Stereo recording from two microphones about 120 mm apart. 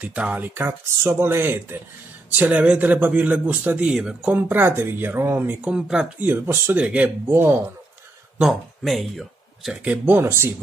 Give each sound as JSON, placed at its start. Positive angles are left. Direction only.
{"t": 0.0, "sound": "speech", "side_deg": -15}
{"t": 8.4, "sound": "speech", "side_deg": 0}
{"t": 10.0, "sound": "speech", "side_deg": -20}